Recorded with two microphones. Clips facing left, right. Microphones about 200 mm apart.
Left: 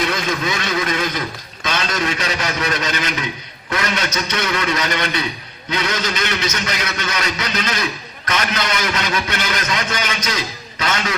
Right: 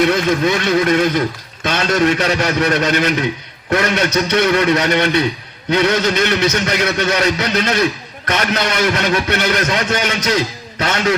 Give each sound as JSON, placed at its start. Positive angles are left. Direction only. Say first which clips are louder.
{"t": 0.0, "sound": "a man's voice", "louder": "right 7 dB", "side_deg": -60}